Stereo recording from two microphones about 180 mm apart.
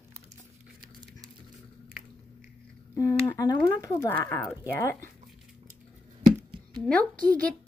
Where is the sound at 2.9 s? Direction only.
15° left (ahead or behind).